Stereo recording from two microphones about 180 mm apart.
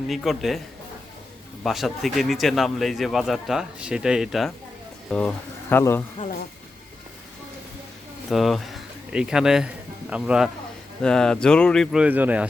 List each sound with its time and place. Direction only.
0.1 s speech: centre (ahead or behind)
1.6 s speech: centre (ahead or behind)
6.2 s speech: 40° left (ahead or behind)
8.3 s speech: centre (ahead or behind)